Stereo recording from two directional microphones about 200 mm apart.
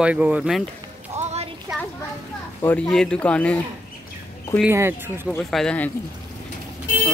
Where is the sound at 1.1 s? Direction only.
35° right (ahead or behind).